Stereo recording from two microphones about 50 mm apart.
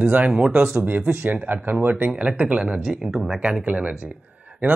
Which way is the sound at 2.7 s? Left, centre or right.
Centre.